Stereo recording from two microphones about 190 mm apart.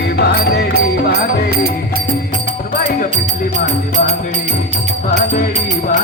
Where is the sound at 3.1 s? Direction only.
40° right (ahead or behind).